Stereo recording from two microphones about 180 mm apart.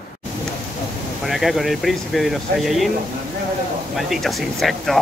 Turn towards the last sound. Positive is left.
turn(degrees=0)  # may be behind; listen again after turning